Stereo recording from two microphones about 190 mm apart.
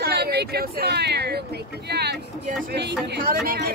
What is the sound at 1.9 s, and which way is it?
Speech, 60° right (ahead or behind).